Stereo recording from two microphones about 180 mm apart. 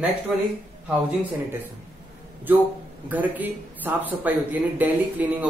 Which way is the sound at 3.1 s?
10° right (ahead or behind).